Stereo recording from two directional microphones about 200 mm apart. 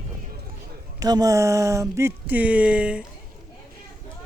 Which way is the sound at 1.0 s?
20° right (ahead or behind).